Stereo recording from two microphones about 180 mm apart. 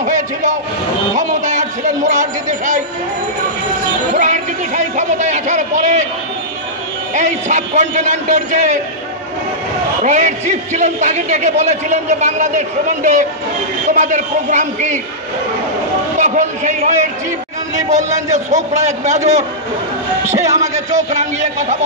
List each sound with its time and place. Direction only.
0.0 s a sound: 45° right (ahead or behind)
1.1 s a man's voice: 40° right (ahead or behind)
4.1 s a man's voice: 45° right (ahead or behind)
7.2 s a man's voice: 40° right (ahead or behind)
10.0 s a man's voice: 40° right (ahead or behind)
16.2 s a man's voice: 45° right (ahead or behind)
21.1 s a man's voice: 40° right (ahead or behind)